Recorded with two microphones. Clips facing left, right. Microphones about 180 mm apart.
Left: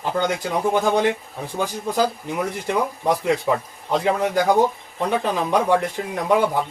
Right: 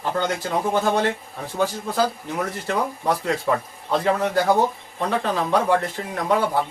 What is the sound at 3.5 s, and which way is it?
Speech, 15° left (ahead or behind).